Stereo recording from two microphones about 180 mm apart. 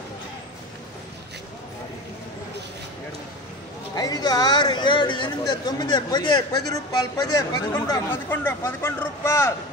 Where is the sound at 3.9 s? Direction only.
20° left (ahead or behind).